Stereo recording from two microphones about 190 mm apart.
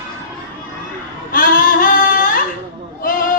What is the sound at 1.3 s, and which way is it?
Singing, 45° left (ahead or behind).